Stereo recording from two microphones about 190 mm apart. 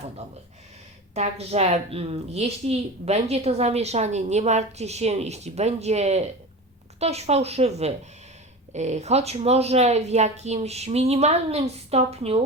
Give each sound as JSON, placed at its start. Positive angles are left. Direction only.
{"t": 1.1, "sound": "speech", "side_deg": -35}